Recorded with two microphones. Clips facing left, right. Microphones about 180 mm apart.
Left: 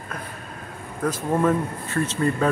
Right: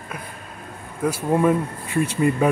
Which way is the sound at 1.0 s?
10° right (ahead or behind).